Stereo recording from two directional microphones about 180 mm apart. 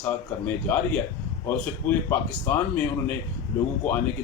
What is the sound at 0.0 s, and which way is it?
Speech, 10° left (ahead or behind).